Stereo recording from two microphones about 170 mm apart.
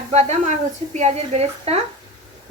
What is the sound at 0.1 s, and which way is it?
Speech, 40° right (ahead or behind).